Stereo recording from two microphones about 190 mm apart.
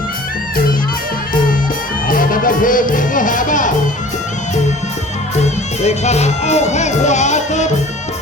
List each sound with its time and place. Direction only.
2.0 s music: 45° left (ahead or behind)
5.8 s speech: 35° left (ahead or behind)